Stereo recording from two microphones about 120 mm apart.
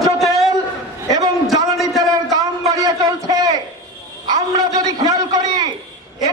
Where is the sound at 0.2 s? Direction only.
Centre (ahead or behind).